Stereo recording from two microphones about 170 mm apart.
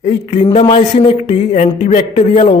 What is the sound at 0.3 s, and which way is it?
Speech, 40° left (ahead or behind).